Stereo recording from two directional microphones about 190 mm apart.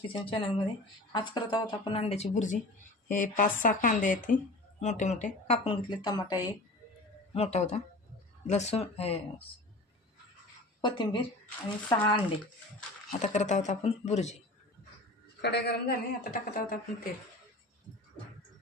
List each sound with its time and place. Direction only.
0.1 s speech: 30° left (ahead or behind)
7.3 s speech: 35° left (ahead or behind)
10.8 s a woman's voice: 25° left (ahead or behind)
13.1 s speech: 40° left (ahead or behind)
15.4 s speech: 60° left (ahead or behind)